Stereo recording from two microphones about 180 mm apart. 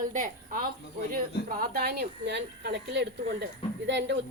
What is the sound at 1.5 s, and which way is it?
Speech, 60° right (ahead or behind).